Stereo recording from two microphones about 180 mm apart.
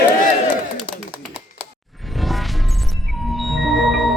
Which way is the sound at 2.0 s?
Centre (ahead or behind).